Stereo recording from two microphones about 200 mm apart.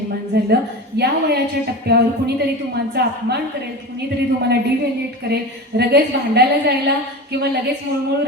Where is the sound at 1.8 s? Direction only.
55° right (ahead or behind).